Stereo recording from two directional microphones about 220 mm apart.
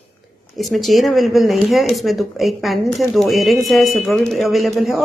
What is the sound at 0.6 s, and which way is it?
Speech, centre (ahead or behind).